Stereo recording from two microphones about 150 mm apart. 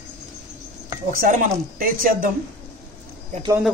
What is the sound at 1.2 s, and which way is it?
Speech, 65° right (ahead or behind).